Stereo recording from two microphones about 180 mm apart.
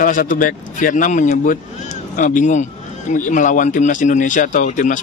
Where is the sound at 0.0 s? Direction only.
50° left (ahead or behind).